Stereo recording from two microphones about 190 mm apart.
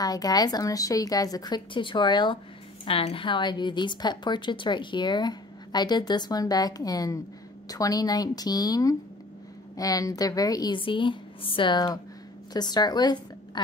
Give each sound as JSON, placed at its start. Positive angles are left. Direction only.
{"t": 0.0, "sound": "a woman's voice", "side_deg": 20}